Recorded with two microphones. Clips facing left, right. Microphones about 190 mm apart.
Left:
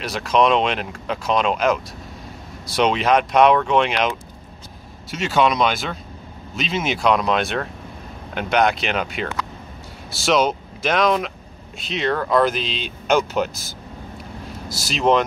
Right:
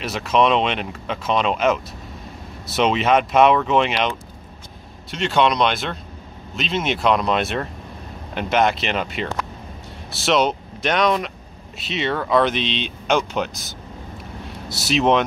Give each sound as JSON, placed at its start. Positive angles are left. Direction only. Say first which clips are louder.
{"t": 0.0, "sound": "speech", "louder": "even", "side_deg": -5}
{"t": 5.1, "sound": "speech", "louder": "even", "side_deg": 5}
{"t": 14.7, "sound": "speech", "louder": "right 1 dB", "side_deg": 0}